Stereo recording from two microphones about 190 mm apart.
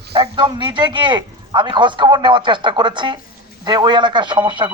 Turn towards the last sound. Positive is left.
turn(degrees=-25)  # may be behind; listen again after turning